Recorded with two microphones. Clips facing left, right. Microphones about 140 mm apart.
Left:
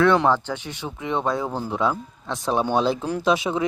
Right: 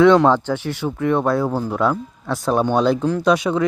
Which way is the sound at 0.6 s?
20° left (ahead or behind).